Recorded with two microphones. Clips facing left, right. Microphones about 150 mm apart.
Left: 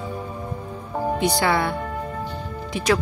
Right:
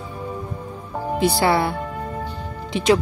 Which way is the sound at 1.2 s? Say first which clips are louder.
Right 4 dB; 30° right (ahead or behind).